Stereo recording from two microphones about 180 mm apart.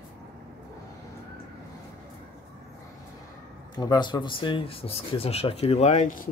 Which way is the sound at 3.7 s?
25° left (ahead or behind).